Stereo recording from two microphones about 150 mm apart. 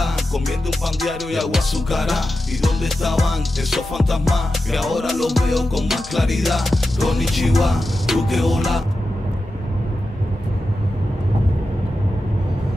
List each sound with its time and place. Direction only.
0.0 s music: centre (ahead or behind)